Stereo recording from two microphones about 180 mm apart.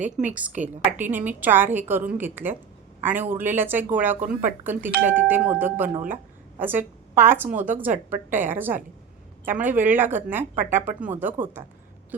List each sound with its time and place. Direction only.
0.0 s a woman's voice: 45° right (ahead or behind)
0.6 s speech: 10° right (ahead or behind)